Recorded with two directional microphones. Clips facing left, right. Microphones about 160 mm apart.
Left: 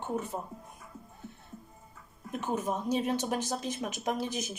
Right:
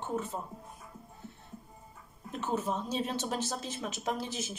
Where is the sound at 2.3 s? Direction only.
15° left (ahead or behind).